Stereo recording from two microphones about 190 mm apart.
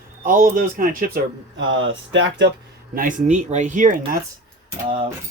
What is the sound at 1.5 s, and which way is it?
Speech, 80° right.